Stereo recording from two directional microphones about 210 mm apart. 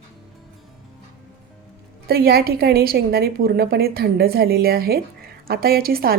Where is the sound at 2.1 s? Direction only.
45° right (ahead or behind).